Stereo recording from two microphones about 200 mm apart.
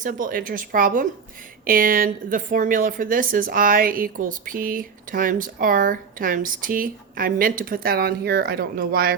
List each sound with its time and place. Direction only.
0.0 s a woman's voice: 40° right (ahead or behind)